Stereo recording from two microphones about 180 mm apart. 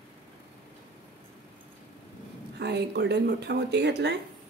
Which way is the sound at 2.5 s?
70° right (ahead or behind).